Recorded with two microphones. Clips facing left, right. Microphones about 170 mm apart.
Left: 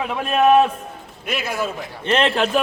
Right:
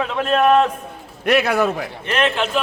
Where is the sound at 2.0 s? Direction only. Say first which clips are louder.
Left 2 dB; 30° left (ahead or behind).